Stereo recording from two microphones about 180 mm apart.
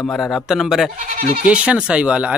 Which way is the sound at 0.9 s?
50° right (ahead or behind).